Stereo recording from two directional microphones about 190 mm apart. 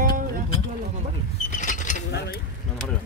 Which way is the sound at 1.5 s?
40° left (ahead or behind).